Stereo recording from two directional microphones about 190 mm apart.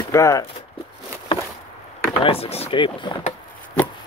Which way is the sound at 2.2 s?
30° left (ahead or behind).